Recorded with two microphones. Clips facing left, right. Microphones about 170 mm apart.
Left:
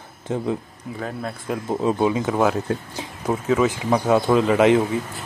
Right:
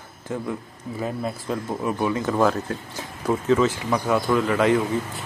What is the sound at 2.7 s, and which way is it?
A man's voice, 20° left (ahead or behind).